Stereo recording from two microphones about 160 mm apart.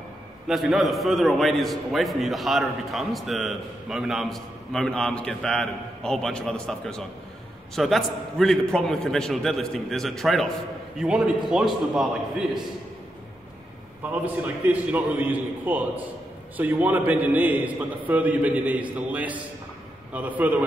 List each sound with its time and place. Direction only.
0.5 s a man's voice: centre (ahead or behind)
14.1 s a man's voice: 10° right (ahead or behind)